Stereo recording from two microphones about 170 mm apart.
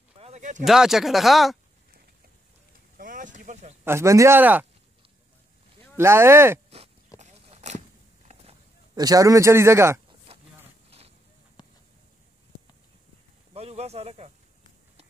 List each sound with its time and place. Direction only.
0.2 s a sound: 45° right (ahead or behind)
0.7 s speech: centre (ahead or behind)
3.0 s vehicle: 50° right (ahead or behind)
3.8 s a man's voice: 15° right (ahead or behind)
5.9 s a man's voice: 15° right (ahead or behind)
7.2 s a sound: 40° right (ahead or behind)
8.9 s a man's voice: 20° right (ahead or behind)
10.3 s vehicle: 35° right (ahead or behind)
11.6 s a sound: 25° left (ahead or behind)
13.5 s snake: 35° right (ahead or behind)